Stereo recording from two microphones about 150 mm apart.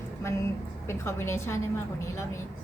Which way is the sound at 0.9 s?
15° left (ahead or behind).